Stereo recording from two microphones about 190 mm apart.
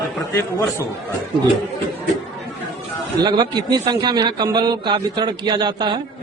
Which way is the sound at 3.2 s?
20° right (ahead or behind).